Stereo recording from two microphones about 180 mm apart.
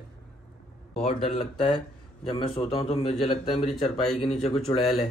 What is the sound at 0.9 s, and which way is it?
Speech, 35° left (ahead or behind).